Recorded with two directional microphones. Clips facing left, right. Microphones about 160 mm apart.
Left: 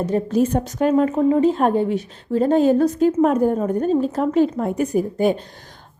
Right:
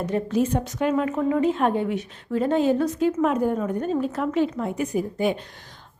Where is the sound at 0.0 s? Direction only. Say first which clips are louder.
Left 4 dB; 40° left (ahead or behind).